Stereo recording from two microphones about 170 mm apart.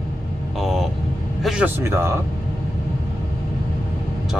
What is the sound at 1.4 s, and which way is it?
Speech, 5° right (ahead or behind).